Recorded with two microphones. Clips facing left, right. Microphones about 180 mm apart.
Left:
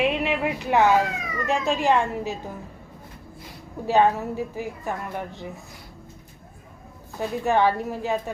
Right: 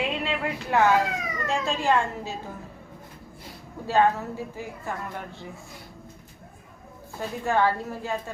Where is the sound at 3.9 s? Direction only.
15° left (ahead or behind).